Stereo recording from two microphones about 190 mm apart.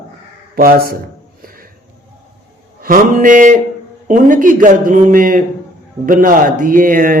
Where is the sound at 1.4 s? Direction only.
50° right (ahead or behind).